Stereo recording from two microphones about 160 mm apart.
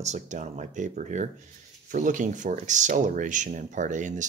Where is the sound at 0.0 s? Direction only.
45° right (ahead or behind).